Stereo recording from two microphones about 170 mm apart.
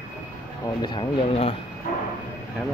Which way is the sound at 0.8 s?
30° left (ahead or behind).